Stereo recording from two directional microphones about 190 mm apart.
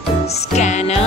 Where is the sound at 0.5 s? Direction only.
35° left (ahead or behind).